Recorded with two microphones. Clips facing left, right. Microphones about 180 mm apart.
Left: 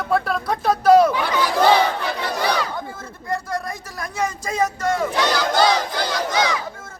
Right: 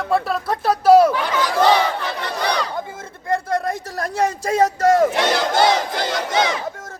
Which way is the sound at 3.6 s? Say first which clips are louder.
Right 6 dB; 65° right (ahead or behind).